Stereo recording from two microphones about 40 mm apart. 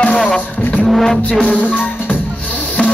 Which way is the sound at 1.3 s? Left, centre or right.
Left.